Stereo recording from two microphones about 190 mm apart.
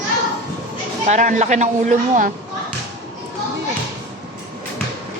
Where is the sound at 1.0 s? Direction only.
40° right (ahead or behind).